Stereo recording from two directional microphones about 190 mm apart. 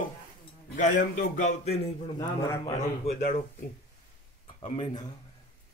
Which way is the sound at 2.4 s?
20° left (ahead or behind).